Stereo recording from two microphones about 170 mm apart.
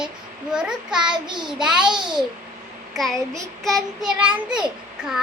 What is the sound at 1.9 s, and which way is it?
Child singing, 25° right (ahead or behind).